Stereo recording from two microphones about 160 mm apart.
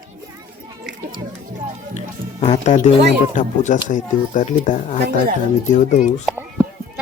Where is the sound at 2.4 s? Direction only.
45° left (ahead or behind).